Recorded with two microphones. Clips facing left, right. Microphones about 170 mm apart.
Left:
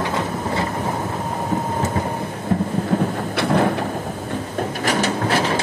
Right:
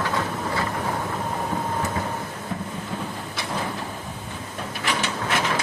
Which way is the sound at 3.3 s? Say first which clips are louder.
Left 12 dB; 65° left (ahead or behind).